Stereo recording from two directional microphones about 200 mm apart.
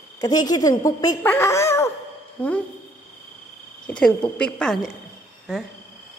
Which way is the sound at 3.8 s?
5° left (ahead or behind).